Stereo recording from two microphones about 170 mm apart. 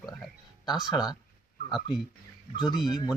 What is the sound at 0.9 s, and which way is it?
Speech, 25° left (ahead or behind).